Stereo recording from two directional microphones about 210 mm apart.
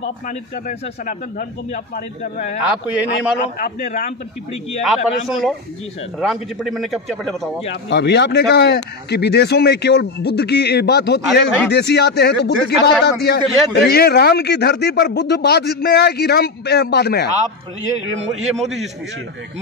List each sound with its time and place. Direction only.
0.7 s speech: 40° left (ahead or behind)
2.9 s a man's voice: 5° right (ahead or behind)
3.4 s speech: 35° left (ahead or behind)
4.8 s speech: centre (ahead or behind)
7.9 s speech: 55° left (ahead or behind)